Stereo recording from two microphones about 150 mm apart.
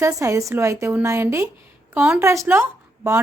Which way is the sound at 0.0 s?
20° right (ahead or behind).